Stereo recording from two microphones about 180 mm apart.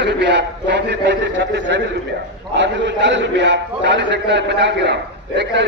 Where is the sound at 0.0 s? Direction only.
75° right (ahead or behind).